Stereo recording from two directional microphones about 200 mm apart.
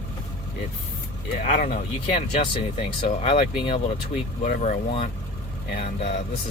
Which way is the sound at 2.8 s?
25° left (ahead or behind).